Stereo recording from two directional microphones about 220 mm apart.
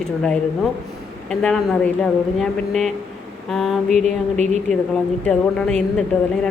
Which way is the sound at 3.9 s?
30° right (ahead or behind).